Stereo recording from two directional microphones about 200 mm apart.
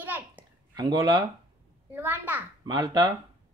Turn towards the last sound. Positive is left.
turn(degrees=-20)  # may be behind; listen again after turning